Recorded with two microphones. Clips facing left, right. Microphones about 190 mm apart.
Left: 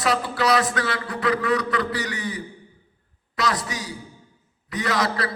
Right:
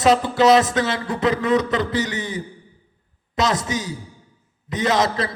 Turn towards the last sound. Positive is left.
turn(degrees=-20)  # may be behind; listen again after turning